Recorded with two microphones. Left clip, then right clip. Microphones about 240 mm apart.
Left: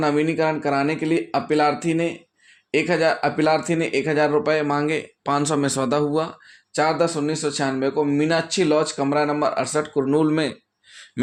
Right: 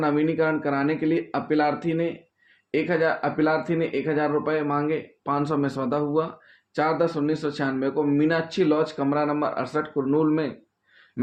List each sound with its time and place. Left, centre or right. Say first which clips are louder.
0.0 s speech: left 2 dB; left